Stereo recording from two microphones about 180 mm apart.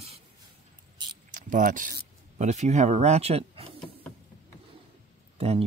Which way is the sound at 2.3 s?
40° right (ahead or behind).